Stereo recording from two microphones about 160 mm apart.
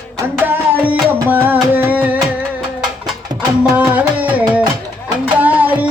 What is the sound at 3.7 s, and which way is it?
Music, 10° right (ahead or behind).